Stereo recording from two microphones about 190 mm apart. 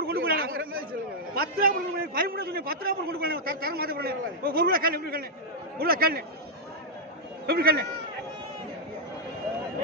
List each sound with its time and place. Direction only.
0.0 s chatter: 55° right (ahead or behind)
1.3 s a man's voice: 50° right (ahead or behind)
7.4 s speech: 55° right (ahead or behind)